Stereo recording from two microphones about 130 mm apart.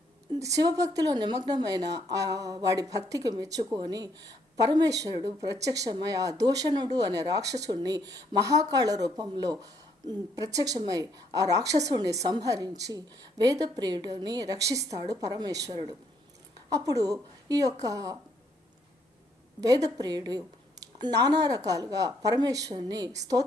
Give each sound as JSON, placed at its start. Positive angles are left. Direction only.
{"t": 0.3, "sound": "a woman's voice", "side_deg": -25}
{"t": 19.6, "sound": "speech", "side_deg": -30}